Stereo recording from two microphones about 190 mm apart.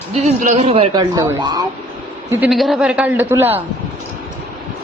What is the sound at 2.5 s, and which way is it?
A man's voice, centre (ahead or behind).